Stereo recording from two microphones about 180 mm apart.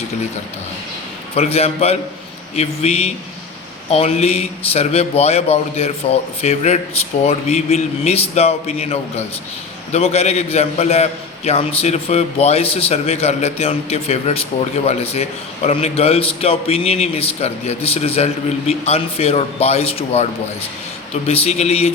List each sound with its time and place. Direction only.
1.4 s a man's voice: 35° left (ahead or behind)
21.2 s a man's voice: 35° left (ahead or behind)